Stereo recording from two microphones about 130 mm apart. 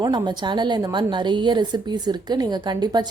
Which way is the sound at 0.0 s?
35° right (ahead or behind).